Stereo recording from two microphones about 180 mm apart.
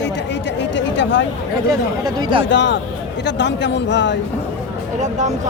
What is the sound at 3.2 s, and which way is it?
Speech, 75° left (ahead or behind).